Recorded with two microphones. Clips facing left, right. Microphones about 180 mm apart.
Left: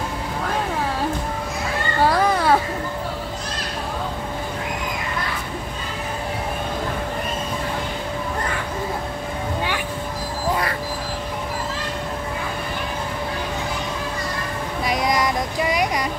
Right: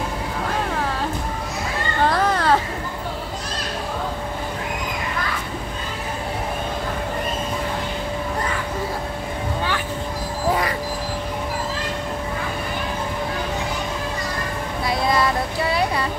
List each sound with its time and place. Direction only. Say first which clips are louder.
2.0 s children playing: left 1 dB; 10° left (ahead or behind)
14.9 s child singing: right 1 dB; 15° left (ahead or behind)